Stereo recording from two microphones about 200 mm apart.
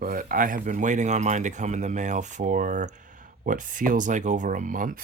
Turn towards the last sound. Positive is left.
turn(degrees=-40)  # may be behind; listen again after turning